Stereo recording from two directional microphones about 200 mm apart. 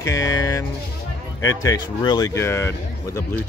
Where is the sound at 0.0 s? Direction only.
15° left (ahead or behind).